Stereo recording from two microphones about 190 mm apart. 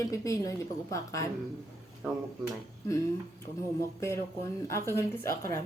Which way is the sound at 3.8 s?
15° left (ahead or behind).